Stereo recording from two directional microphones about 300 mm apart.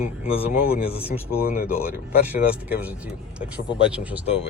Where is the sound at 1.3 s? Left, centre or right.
Left.